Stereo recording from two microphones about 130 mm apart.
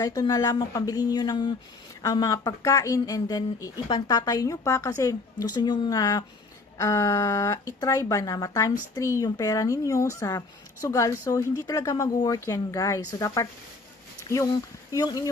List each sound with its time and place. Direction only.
0.0 s speech: 30° left (ahead or behind)
14.5 s speech: 30° left (ahead or behind)